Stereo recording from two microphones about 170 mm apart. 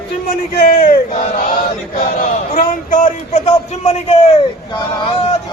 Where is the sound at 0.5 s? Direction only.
65° left (ahead or behind).